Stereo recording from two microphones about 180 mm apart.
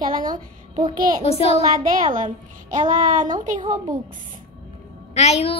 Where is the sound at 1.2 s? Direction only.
35° left (ahead or behind).